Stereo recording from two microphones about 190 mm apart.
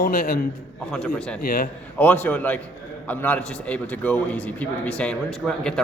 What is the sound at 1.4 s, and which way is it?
Speech, 50° left (ahead or behind).